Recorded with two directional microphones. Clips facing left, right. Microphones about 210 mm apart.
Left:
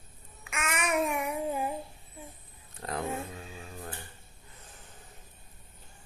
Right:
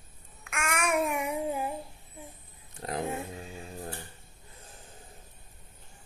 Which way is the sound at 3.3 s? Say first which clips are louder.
Right 3 dB; 20° right (ahead or behind).